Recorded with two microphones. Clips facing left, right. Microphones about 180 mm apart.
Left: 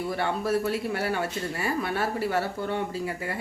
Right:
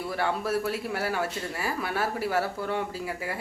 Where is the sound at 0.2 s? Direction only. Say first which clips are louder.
Even; centre (ahead or behind).